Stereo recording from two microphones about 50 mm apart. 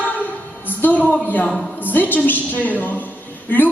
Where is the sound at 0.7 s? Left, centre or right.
Left.